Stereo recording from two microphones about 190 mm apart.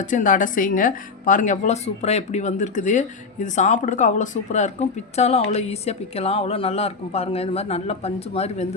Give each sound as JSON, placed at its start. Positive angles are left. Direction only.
{"t": 0.0, "sound": "a woman's voice", "side_deg": 45}